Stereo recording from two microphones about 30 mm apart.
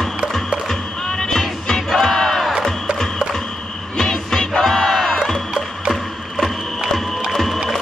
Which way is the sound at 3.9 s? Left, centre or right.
Centre.